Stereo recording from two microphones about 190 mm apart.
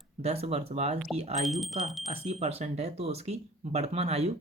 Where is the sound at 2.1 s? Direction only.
35° right (ahead or behind).